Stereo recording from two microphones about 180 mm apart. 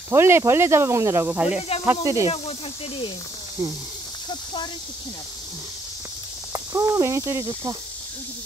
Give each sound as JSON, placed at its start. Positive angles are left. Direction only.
{"t": 0.1, "sound": "speech", "side_deg": -15}
{"t": 6.5, "sound": "speech", "side_deg": -15}